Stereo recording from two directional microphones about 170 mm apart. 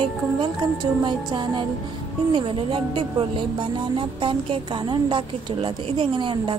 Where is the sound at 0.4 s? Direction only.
25° right (ahead or behind).